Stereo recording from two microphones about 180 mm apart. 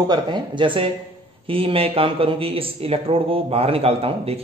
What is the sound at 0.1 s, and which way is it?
A man's voice, 25° right (ahead or behind).